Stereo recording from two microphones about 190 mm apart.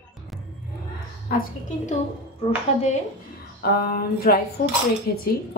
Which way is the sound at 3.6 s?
50° left (ahead or behind).